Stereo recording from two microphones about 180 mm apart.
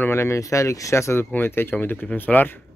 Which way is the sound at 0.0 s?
15° left (ahead or behind).